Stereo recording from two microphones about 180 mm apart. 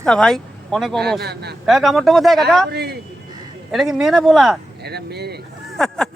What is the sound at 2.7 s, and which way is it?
Speech, 65° right (ahead or behind).